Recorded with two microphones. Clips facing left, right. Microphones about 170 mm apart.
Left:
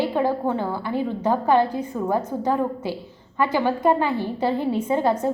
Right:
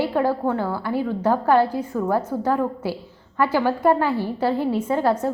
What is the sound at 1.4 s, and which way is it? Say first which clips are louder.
Speech: even; 5° right (ahead or behind).